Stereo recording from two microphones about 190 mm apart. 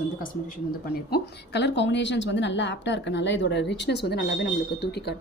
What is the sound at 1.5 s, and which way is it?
A woman's voice, 65° left (ahead or behind).